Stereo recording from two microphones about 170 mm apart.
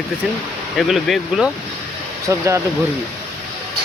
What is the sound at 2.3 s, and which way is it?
Speech, 15° right (ahead or behind).